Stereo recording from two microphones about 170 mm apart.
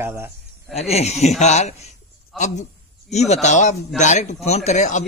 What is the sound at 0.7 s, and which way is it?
Speech, 40° left (ahead or behind).